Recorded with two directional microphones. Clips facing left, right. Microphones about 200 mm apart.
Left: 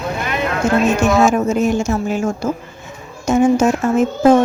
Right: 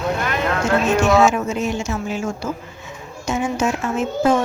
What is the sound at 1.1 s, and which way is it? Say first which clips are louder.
Speech: left 2 dB; 45° left (ahead or behind).